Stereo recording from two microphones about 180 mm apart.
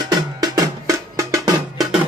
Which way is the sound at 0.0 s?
20° right (ahead or behind).